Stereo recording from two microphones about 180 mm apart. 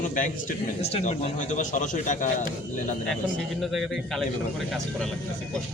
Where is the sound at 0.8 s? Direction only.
35° left (ahead or behind).